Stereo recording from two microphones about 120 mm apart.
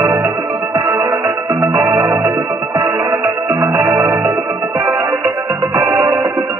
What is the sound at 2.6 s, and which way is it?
Music, 30° right (ahead or behind).